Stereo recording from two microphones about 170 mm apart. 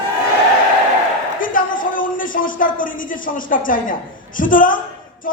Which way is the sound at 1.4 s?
55° left (ahead or behind).